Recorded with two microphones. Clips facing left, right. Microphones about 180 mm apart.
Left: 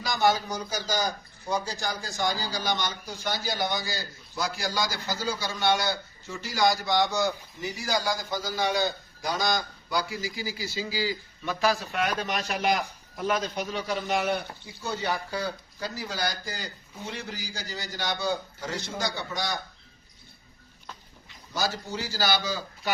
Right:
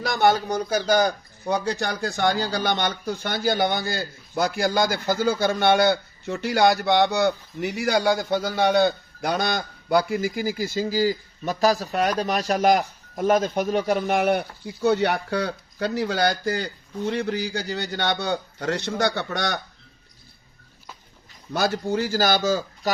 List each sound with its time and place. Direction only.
0.0 s a man's voice: 60° right (ahead or behind)
21.5 s a man's voice: 60° right (ahead or behind)